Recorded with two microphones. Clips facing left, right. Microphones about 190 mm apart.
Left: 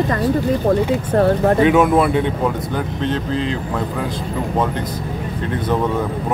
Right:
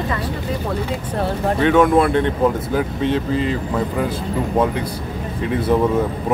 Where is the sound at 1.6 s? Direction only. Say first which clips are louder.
Right 3 dB; 10° left (ahead or behind).